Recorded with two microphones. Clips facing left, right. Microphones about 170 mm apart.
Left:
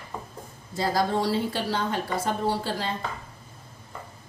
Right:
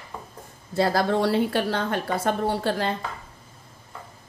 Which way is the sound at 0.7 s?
65° right (ahead or behind).